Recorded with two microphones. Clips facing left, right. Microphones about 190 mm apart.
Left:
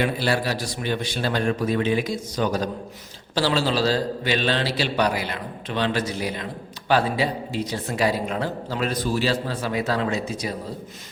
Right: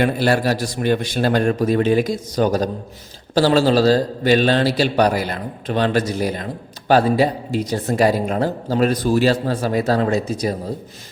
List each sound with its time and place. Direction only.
0.0 s a man's voice: 50° right (ahead or behind)